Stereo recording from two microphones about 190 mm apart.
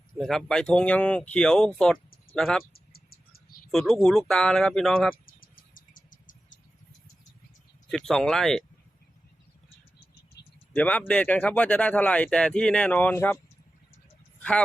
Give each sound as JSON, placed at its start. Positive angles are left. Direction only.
{"t": 0.1, "sound": "speech", "side_deg": 0}
{"t": 2.7, "sound": "cricket", "side_deg": 55}
{"t": 3.7, "sound": "speech", "side_deg": 0}
{"t": 5.1, "sound": "cricket", "side_deg": 50}
{"t": 7.9, "sound": "speech", "side_deg": 0}
{"t": 10.4, "sound": "a sound", "side_deg": 60}
{"t": 10.7, "sound": "speech", "side_deg": 10}